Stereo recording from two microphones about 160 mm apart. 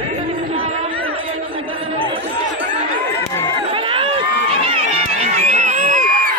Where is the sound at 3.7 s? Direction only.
35° right (ahead or behind).